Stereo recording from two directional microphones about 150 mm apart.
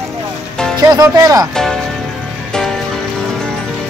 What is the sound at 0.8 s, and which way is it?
Speech, 25° right (ahead or behind).